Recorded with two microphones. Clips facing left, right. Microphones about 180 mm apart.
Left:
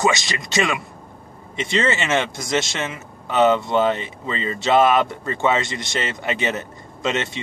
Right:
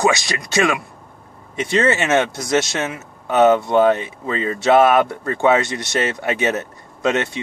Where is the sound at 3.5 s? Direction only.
55° right (ahead or behind).